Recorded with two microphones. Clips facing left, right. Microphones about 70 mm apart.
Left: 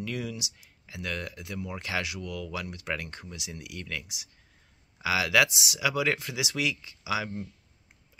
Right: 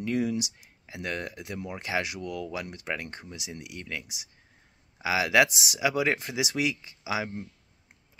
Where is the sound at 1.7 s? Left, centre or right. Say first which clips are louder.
Right 3 dB; right.